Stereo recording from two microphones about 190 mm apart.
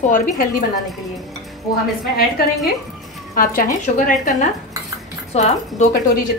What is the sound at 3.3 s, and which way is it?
A woman's voice, 45° left (ahead or behind).